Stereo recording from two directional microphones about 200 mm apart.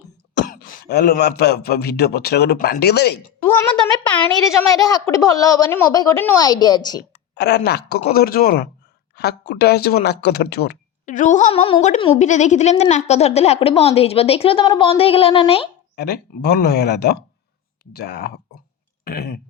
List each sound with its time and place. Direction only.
0.3 s speech: 50° left (ahead or behind)
3.4 s a woman's voice: 10° left (ahead or behind)
7.1 s speech: 55° left (ahead or behind); by 15.7 s 30° left (ahead or behind)
16.0 s speech: 55° left (ahead or behind)